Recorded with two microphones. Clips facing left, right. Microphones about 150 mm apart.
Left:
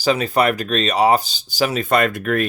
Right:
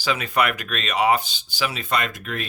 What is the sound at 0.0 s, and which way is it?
Speech, 35° left (ahead or behind).